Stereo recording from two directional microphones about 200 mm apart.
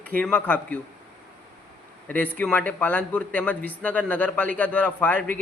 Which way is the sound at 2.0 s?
10° left (ahead or behind).